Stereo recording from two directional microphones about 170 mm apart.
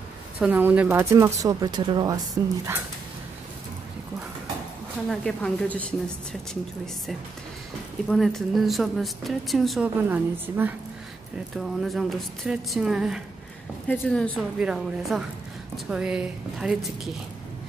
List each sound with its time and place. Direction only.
0.4 s speech: 10° right (ahead or behind)
5.1 s speech: 5° left (ahead or behind)
8.1 s speech: centre (ahead or behind)
10.0 s a woman's voice: 10° right (ahead or behind)
11.5 s speech: centre (ahead or behind)
13.8 s speech: 5° left (ahead or behind)
14.6 s speech: 5° right (ahead or behind)